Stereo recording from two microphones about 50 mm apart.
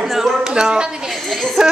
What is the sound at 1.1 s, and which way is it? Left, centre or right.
Speech, centre.